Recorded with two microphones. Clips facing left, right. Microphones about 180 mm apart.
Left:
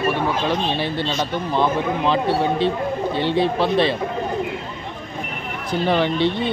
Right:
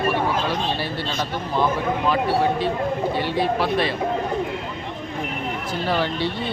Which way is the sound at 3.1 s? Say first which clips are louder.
Left 2 dB; 25° left (ahead or behind).